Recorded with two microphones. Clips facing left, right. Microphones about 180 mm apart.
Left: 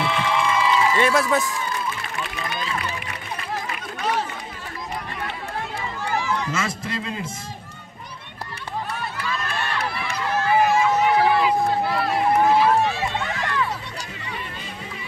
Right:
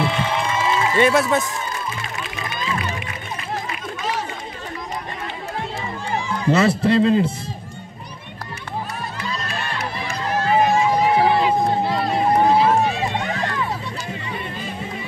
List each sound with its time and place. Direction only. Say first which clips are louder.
0.0 s a sound: right 1 dB; 40° right (ahead or behind)
1.0 s a man's voice: right 3 dB; centre (ahead or behind)
6.0 s run: right 4 dB; 30° right (ahead or behind)
6.8 s a man's voice: right 14 dB; 35° right (ahead or behind)
9.9 s run: right 4 dB; 25° right (ahead or behind)
13.3 s music: right 3 dB; 30° right (ahead or behind)